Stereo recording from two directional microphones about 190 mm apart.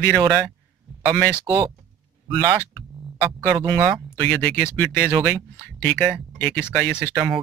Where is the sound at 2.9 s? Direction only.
Centre (ahead or behind).